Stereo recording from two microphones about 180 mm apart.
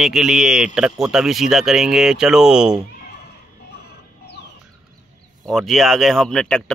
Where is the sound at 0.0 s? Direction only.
Centre (ahead or behind).